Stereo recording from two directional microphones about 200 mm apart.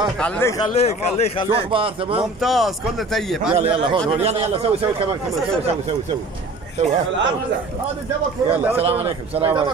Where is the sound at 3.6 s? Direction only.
25° right (ahead or behind).